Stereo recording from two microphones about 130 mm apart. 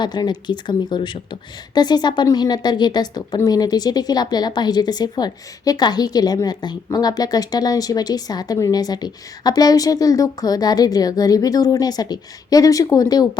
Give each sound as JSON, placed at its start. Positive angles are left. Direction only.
{"t": 0.0, "sound": "speech", "side_deg": 35}